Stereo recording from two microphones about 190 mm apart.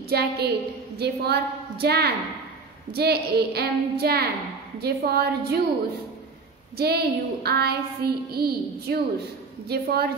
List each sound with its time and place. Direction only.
0.1 s a woman's voice: 55° right (ahead or behind)
6.8 s a woman's voice: 55° right (ahead or behind)